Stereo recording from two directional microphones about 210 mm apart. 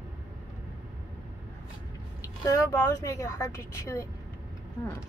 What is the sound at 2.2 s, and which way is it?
A woman's voice, 15° left (ahead or behind).